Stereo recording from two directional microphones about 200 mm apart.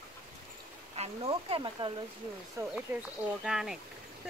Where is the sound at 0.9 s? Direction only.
30° right (ahead or behind).